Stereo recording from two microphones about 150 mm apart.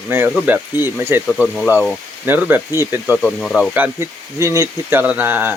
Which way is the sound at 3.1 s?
5° left (ahead or behind).